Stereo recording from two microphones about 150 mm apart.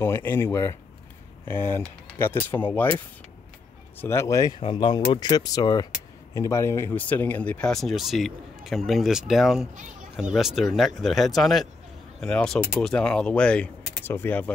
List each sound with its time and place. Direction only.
0.0 s speech: 15° left (ahead or behind)
4.0 s speech: 20° left (ahead or behind)
4.6 s speech: 35° left (ahead or behind); by 14.5 s 10° left (ahead or behind)